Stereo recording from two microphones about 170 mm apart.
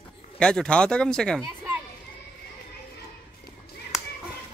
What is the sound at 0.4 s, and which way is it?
Speech, 5° left (ahead or behind).